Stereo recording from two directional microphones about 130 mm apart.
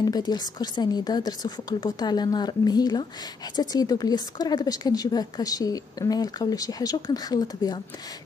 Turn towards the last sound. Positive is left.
turn(degrees=30)  # may be behind; listen again after turning